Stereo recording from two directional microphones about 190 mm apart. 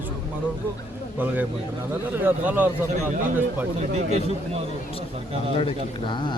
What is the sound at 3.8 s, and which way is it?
Speech, 35° right (ahead or behind).